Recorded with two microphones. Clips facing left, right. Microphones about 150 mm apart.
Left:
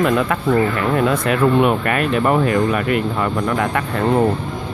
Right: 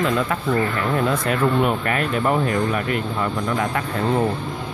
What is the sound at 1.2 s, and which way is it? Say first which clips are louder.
Speech: left 6 dB; 85° left.